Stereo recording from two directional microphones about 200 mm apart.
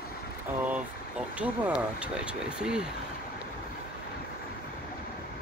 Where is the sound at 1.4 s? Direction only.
5° right (ahead or behind).